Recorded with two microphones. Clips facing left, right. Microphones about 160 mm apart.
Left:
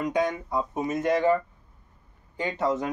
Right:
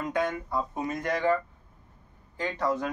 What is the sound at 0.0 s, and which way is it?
Speech, 15° left (ahead or behind).